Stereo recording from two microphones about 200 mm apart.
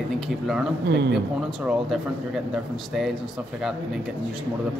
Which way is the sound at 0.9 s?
55° right (ahead or behind).